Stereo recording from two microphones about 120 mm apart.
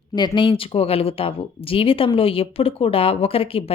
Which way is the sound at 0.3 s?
45° left (ahead or behind).